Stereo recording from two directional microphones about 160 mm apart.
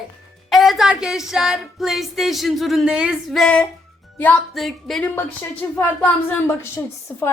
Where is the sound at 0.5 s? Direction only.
Centre (ahead or behind).